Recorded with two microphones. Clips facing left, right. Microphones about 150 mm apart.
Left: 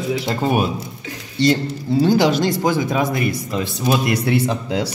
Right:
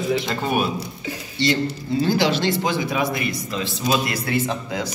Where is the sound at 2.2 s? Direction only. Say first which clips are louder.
Left 4 dB; 45° left (ahead or behind).